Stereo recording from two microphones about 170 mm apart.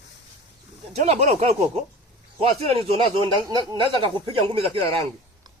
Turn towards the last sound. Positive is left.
turn(degrees=-35)  # may be behind; listen again after turning